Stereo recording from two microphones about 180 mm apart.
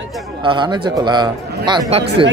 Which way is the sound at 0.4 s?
25° right (ahead or behind).